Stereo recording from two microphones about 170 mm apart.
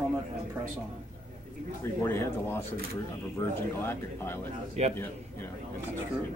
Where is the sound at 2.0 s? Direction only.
15° left (ahead or behind).